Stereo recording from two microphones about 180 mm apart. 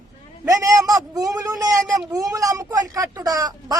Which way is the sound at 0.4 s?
20° right (ahead or behind).